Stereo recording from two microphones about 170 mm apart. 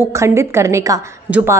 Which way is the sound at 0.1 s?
15° right (ahead or behind).